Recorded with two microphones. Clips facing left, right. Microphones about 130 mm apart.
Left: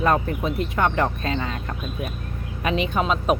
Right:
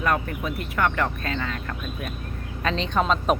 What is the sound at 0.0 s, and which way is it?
Speech, 30° left (ahead or behind).